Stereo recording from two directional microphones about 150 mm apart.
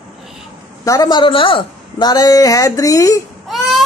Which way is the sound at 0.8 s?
25° left (ahead or behind).